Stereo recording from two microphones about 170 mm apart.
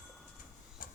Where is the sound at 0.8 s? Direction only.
55° left (ahead or behind).